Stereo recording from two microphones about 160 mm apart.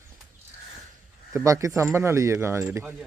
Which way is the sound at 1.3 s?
20° right (ahead or behind).